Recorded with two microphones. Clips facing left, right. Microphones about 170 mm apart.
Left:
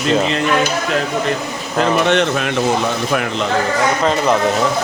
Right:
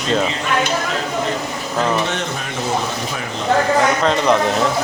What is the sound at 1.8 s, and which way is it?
Speech, 75° left (ahead or behind).